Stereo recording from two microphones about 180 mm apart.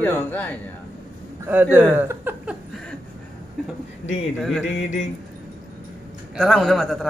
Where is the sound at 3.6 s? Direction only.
Centre (ahead or behind).